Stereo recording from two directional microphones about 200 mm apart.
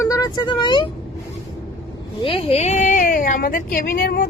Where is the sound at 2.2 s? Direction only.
30° left (ahead or behind); by 4.3 s 45° left (ahead or behind).